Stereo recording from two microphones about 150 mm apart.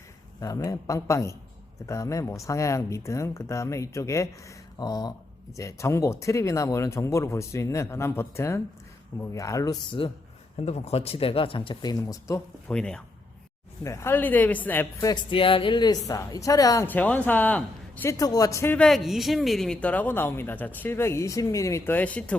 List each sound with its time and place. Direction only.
0.3 s speech: 20° left (ahead or behind)
10.0 s speech: 35° left (ahead or behind)
10.6 s speech: 45° left (ahead or behind); by 12.4 s 25° left (ahead or behind)
12.6 s speech: 5° left (ahead or behind)
13.8 s speech: 20° left (ahead or behind)
15.0 s speech: 30° left (ahead or behind)
16.8 s speech: 10° left (ahead or behind)
18.1 s speech: 25° left (ahead or behind)
18.8 s speech: centre (ahead or behind)